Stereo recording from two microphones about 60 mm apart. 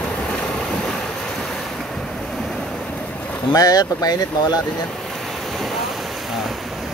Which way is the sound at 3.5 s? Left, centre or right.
Left.